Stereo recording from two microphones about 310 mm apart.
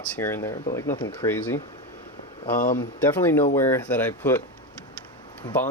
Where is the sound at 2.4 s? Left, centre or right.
Left.